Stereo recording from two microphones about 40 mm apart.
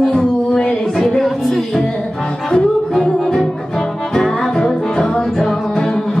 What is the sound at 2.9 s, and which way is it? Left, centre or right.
Music, centre.